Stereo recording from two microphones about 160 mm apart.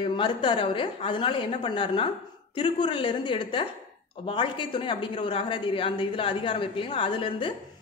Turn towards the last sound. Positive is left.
turn(degrees=30)  # may be behind; listen again after turning